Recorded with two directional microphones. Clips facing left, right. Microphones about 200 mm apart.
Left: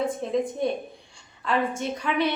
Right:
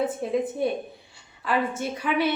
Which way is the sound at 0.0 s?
5° right (ahead or behind).